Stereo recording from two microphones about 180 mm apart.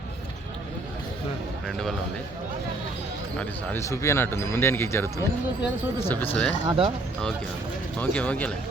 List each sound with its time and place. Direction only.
1.6 s a man's voice: centre (ahead or behind)
3.7 s speech: 15° left (ahead or behind)
6.7 s speech: 30° right (ahead or behind)
7.9 s speech: 5° left (ahead or behind)